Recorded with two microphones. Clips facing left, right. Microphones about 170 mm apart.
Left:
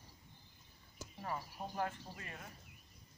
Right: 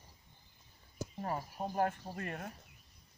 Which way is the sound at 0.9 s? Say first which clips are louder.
Right 5 dB; 40° right (ahead or behind).